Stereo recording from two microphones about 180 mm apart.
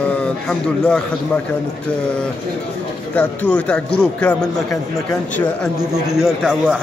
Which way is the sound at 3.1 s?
10° left (ahead or behind).